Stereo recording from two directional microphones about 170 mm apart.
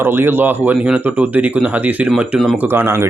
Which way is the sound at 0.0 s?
15° right (ahead or behind).